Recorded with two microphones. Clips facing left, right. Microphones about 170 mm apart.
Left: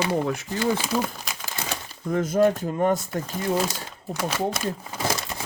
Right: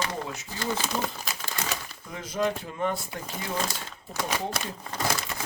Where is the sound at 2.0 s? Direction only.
50° left (ahead or behind).